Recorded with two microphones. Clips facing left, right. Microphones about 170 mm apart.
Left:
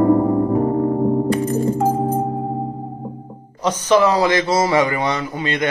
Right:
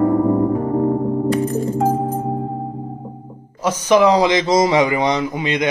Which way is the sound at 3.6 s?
10° right (ahead or behind).